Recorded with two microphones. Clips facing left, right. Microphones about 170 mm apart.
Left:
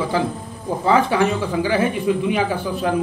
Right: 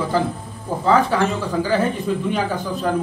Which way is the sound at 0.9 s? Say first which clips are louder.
Even; 10° left (ahead or behind).